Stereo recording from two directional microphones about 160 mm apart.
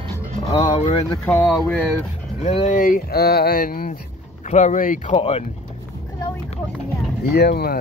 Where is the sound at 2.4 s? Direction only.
45° left (ahead or behind); by 3.9 s 65° left (ahead or behind).